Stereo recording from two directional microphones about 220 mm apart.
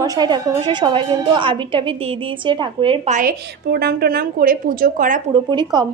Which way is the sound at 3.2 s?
45° right (ahead or behind).